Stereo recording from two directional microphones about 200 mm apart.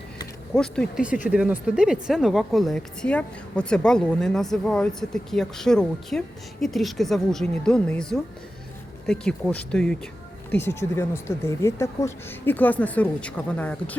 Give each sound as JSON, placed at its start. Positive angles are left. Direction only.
{"t": 0.5, "sound": "a woman's voice", "side_deg": 5}